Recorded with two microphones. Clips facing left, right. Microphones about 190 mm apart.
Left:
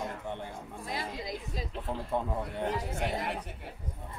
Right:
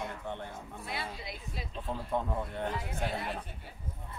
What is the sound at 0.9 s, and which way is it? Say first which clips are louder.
Speech: left 4 dB; 40° left (ahead or behind).